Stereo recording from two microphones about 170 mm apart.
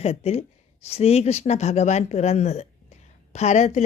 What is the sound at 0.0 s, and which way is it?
A woman's voice, 40° left (ahead or behind).